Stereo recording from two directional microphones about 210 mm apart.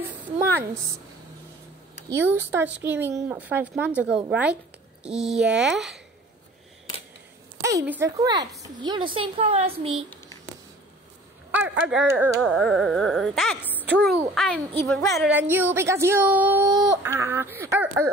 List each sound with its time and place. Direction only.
2.0 s speech: 10° right (ahead or behind)
5.0 s carnatic music: 5° right (ahead or behind)
7.6 s a woman's voice: 10° right (ahead or behind); by 10.0 s 30° right (ahead or behind)
11.5 s carnatic music: 5° right (ahead or behind)
15.1 s speech: 5° right (ahead or behind)